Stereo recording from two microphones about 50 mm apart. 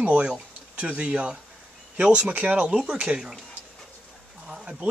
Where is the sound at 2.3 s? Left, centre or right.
Right.